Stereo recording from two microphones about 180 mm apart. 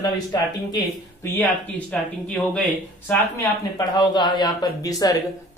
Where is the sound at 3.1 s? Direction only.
20° left (ahead or behind).